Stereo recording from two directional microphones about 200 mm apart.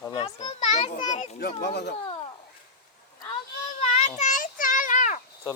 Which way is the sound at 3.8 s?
35° left (ahead or behind).